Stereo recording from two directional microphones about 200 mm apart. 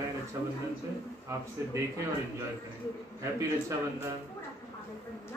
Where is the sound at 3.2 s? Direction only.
15° right (ahead or behind).